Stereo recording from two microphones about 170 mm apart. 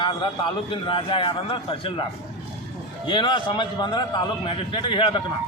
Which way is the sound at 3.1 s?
30° left (ahead or behind).